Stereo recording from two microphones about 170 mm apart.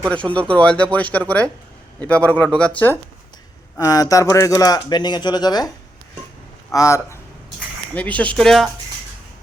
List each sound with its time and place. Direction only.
0.1 s speech: 5° left (ahead or behind); by 5.7 s 25° left (ahead or behind)
6.7 s speech: 15° left (ahead or behind); by 8.7 s centre (ahead or behind)